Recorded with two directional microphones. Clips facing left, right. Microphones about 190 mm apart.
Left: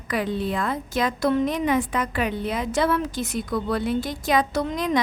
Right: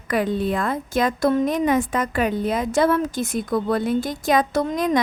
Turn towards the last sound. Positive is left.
turn(degrees=-45)  # may be behind; listen again after turning